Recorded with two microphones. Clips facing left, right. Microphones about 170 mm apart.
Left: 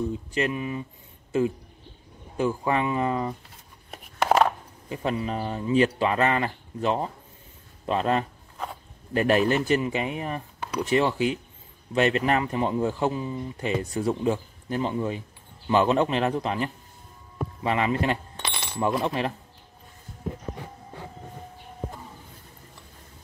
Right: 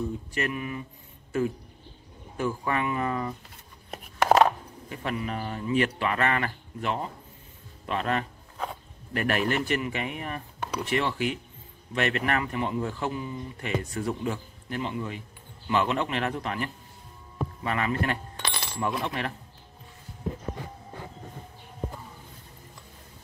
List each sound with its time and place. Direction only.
0.3 s speech: 25° left (ahead or behind)
2.3 s speech: 20° left (ahead or behind)
3.9 s chopping: centre (ahead or behind)
4.8 s speech: 25° left (ahead or behind)
10.6 s a sound: centre (ahead or behind)
11.0 s speech: 25° left (ahead or behind)